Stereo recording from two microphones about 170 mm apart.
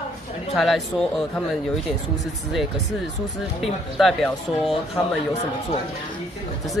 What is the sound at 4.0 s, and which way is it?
Speech, centre (ahead or behind).